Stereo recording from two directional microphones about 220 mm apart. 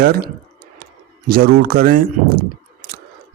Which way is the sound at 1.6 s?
40° right (ahead or behind).